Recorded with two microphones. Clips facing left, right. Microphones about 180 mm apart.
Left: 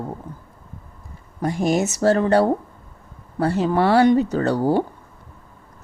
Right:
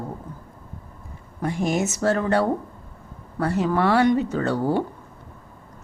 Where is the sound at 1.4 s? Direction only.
35° left (ahead or behind).